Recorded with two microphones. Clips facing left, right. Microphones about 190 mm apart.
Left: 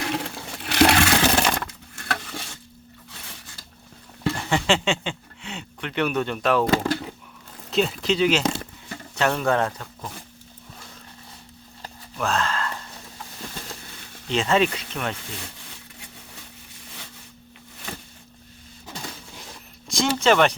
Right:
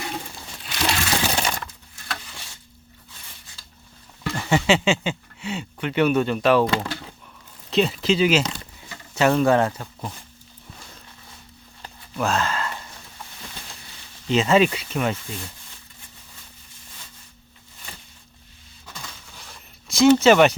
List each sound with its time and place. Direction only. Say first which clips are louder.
0.1 s sewing machine: left 5 dB; 75° left (ahead or behind)
4.4 s speech: right 4 dB; 5° right (ahead or behind)
6.7 s speech: left 4 dB; 45° left (ahead or behind)
7.7 s speech: right 2 dB; centre (ahead or behind)
12.2 s speech: right 1 dB; 5° right (ahead or behind)
14.3 s speech: right 3 dB; 5° right (ahead or behind)
19.9 s speech: right 6 dB; 5° right (ahead or behind)